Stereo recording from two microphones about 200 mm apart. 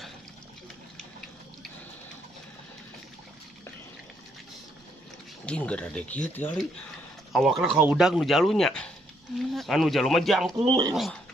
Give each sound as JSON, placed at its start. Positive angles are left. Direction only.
{"t": 5.5, "sound": "speech", "side_deg": 5}
{"t": 10.6, "sound": "speech", "side_deg": -20}
{"t": 10.9, "sound": "speech", "side_deg": 0}